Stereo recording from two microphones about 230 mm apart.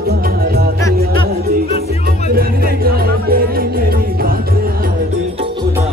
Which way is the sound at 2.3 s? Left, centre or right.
Right.